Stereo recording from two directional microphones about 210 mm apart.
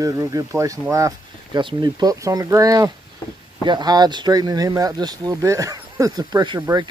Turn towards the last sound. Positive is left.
turn(degrees=-20)  # may be behind; listen again after turning